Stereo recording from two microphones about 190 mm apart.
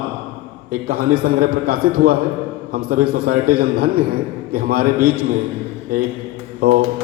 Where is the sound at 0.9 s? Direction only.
50° right (ahead or behind).